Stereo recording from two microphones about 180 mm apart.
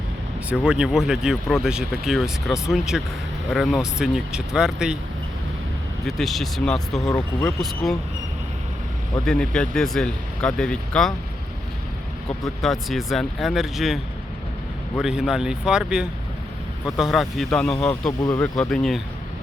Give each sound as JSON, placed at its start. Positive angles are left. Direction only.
{"t": 0.5, "sound": "speech", "side_deg": -5}
{"t": 6.1, "sound": "speech", "side_deg": 0}
{"t": 7.1, "sound": "speech", "side_deg": 15}
{"t": 9.2, "sound": "speech", "side_deg": 5}
{"t": 12.6, "sound": "speech", "side_deg": 0}
{"t": 18.2, "sound": "speech", "side_deg": 15}
{"t": 18.5, "sound": "speech", "side_deg": 5}